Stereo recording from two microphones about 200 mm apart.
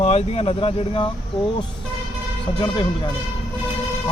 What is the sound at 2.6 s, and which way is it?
Speech, 20° left (ahead or behind).